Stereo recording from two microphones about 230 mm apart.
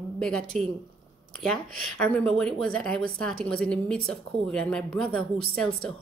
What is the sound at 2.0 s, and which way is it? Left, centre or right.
A woman's voice, centre.